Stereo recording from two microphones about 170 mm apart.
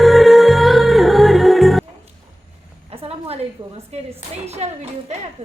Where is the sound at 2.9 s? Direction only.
35° right (ahead or behind).